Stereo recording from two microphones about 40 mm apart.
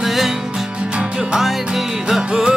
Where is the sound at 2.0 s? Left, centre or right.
Centre.